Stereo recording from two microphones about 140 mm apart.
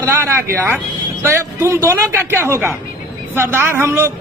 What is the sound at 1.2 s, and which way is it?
A man's voice, 20° right (ahead or behind).